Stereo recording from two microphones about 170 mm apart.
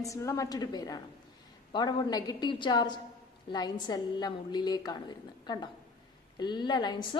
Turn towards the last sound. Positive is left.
turn(degrees=25)  # may be behind; listen again after turning